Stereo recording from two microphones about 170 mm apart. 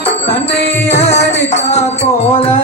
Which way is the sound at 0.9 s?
40° left (ahead or behind).